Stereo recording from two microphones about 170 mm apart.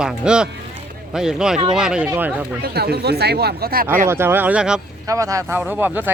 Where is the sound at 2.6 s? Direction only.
70° right (ahead or behind).